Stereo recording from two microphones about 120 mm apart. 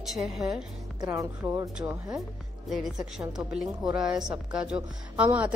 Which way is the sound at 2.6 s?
5° right (ahead or behind).